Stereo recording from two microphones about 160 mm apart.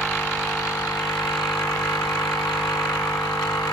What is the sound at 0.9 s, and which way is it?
Vehicle, centre (ahead or behind).